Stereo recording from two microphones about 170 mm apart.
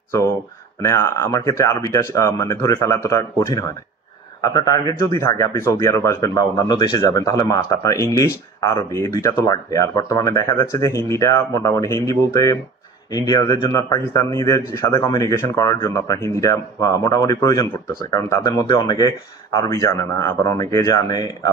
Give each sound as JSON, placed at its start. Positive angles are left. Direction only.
{"t": 0.7, "sound": "speech", "side_deg": 15}